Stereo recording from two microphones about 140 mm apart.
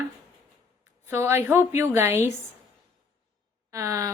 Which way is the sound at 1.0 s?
20° right (ahead or behind).